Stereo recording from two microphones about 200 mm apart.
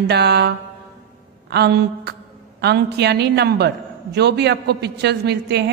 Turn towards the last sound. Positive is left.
turn(degrees=-55)  # may be behind; listen again after turning